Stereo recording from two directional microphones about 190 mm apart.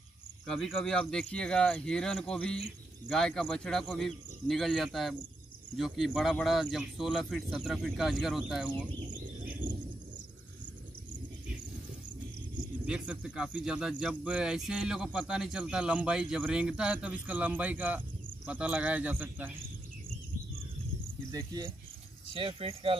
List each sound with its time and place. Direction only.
0.5 s speech: centre (ahead or behind)
12.8 s speech: 5° right (ahead or behind)
21.3 s speech: 20° right (ahead or behind)